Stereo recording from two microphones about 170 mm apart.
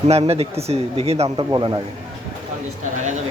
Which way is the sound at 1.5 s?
25° right (ahead or behind).